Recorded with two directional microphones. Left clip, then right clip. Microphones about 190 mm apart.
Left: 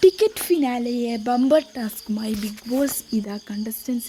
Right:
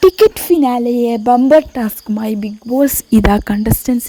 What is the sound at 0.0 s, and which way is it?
Speech, 45° right (ahead or behind).